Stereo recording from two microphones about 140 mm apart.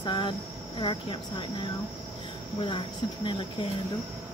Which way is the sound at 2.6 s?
35° left (ahead or behind).